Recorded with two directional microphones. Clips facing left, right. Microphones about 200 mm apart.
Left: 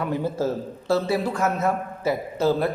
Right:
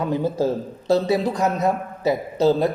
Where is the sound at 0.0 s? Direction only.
20° right (ahead or behind).